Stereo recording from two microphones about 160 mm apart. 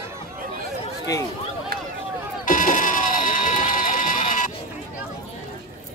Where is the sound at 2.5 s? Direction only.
55° left (ahead or behind).